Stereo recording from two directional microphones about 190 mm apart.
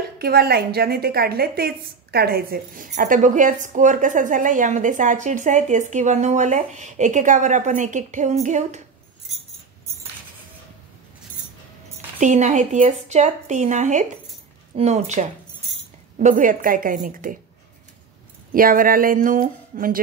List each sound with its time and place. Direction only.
0.2 s a woman's voice: 55° right (ahead or behind); by 8.8 s 40° right (ahead or behind)
12.2 s a woman's voice: 40° right (ahead or behind)
18.5 s speech: 50° right (ahead or behind)